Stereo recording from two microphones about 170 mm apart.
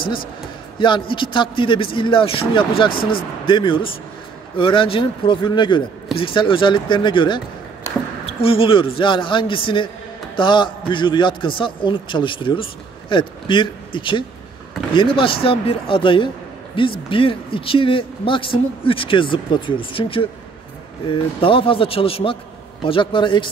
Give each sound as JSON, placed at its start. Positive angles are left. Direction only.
{"t": 0.7, "sound": "a man's voice", "side_deg": 30}
{"t": 2.9, "sound": "speech", "side_deg": 60}
{"t": 3.4, "sound": "a man's voice", "side_deg": 30}